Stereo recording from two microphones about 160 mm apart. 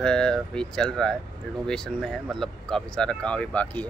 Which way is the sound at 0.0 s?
5° left (ahead or behind).